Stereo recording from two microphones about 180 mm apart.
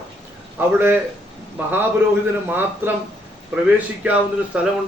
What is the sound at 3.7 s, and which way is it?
Speech, 5° right (ahead or behind).